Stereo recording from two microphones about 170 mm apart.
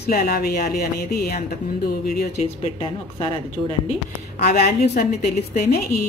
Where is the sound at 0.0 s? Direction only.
65° left (ahead or behind).